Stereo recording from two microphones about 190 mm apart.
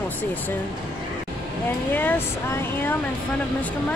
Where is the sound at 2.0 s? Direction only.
10° left (ahead or behind).